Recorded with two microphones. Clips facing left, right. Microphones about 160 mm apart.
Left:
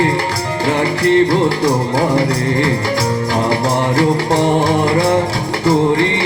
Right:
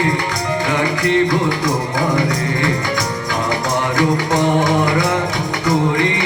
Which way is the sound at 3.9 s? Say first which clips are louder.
Left 1 dB; 30° left (ahead or behind).